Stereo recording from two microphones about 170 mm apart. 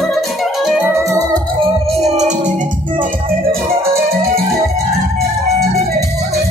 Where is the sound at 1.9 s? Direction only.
40° right (ahead or behind).